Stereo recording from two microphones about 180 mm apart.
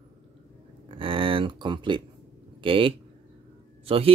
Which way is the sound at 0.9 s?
30° right (ahead or behind).